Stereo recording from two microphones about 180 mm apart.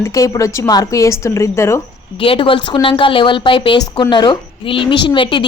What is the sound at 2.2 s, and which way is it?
Speech, 30° left (ahead or behind).